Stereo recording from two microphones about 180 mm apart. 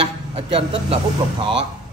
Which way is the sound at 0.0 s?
30° right (ahead or behind).